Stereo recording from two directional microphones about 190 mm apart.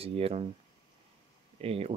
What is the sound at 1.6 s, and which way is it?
Speech, 30° right (ahead or behind).